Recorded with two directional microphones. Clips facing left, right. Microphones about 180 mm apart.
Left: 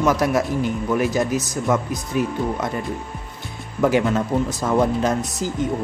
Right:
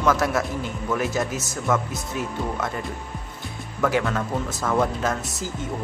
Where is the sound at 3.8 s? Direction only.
20° left (ahead or behind).